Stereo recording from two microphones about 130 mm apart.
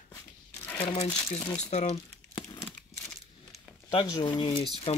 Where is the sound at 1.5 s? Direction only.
60° left (ahead or behind).